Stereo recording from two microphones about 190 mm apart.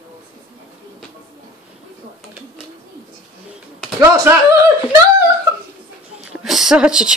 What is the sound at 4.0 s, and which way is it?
Speech, 15° right (ahead or behind).